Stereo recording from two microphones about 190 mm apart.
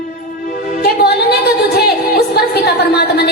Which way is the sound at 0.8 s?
60° left (ahead or behind).